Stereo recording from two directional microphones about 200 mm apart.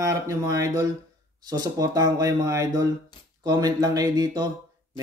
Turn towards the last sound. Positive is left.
turn(degrees=-20)  # may be behind; listen again after turning